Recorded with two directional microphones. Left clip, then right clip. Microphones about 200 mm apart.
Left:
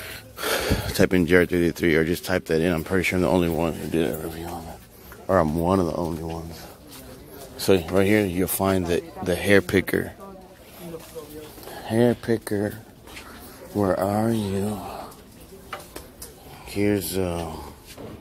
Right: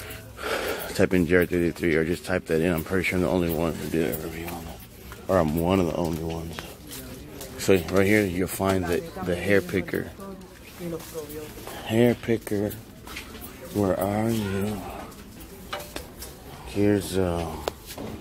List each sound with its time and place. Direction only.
0.0 s speech: 30° left (ahead or behind)
5.2 s speech: 15° left (ahead or behind)
7.5 s speech: 20° left (ahead or behind); by 10.0 s 35° left (ahead or behind)
11.8 s speech: 20° left (ahead or behind)
13.7 s speech: 20° left (ahead or behind)
16.7 s speech: 15° left (ahead or behind)